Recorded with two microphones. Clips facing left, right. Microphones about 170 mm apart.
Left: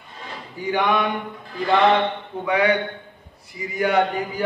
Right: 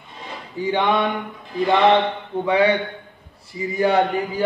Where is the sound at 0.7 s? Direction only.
25° right (ahead or behind).